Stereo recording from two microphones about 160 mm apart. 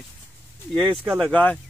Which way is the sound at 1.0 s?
10° right (ahead or behind).